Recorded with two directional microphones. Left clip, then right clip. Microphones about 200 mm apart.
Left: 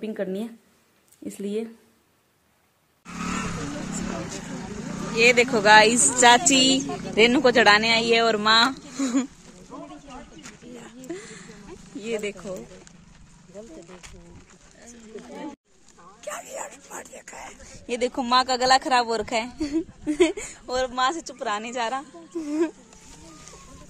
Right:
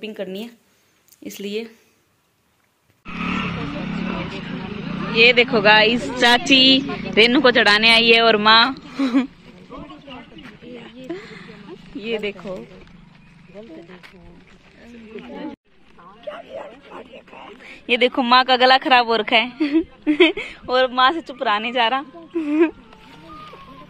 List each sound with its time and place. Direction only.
0.0 s a woman's voice: 15° left (ahead or behind)
3.1 s vehicle: 5° right (ahead or behind)
5.1 s speech: 10° left (ahead or behind)
6.8 s speech: 80° left
7.2 s speech: 5° left (ahead or behind)
10.4 s a sound: 5° left (ahead or behind)
12.0 s speech: 10° left (ahead or behind)
13.8 s speech: 10° left (ahead or behind)
16.3 s dog: 20° left (ahead or behind)
17.6 s a woman's voice: centre (ahead or behind)